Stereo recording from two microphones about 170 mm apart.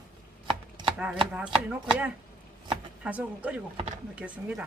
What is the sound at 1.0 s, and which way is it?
A woman's voice, 5° right (ahead or behind).